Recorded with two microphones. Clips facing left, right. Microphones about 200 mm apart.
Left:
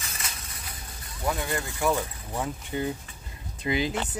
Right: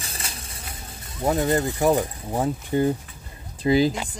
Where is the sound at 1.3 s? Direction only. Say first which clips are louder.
Right 9 dB; 40° right (ahead or behind).